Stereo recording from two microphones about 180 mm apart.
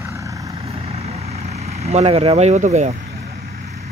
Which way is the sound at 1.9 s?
35° right (ahead or behind).